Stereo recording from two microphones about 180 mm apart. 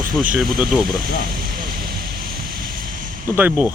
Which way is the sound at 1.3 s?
55° right (ahead or behind).